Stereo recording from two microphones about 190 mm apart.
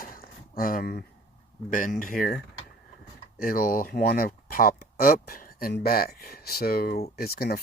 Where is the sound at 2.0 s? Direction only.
50° left (ahead or behind).